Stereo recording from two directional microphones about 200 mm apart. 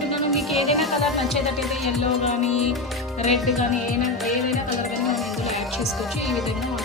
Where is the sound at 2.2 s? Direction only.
30° left (ahead or behind).